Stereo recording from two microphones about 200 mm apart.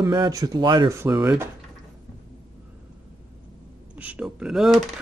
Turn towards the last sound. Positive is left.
turn(degrees=0)  # may be behind; listen again after turning